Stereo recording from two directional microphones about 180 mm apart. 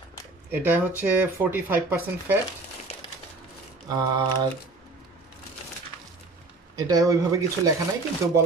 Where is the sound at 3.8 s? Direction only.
20° right (ahead or behind).